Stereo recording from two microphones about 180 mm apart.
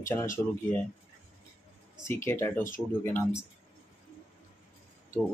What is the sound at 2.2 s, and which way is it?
Speech, 15° left (ahead or behind).